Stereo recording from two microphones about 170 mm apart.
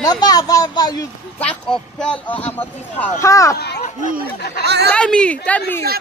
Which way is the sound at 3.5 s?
75° left (ahead or behind).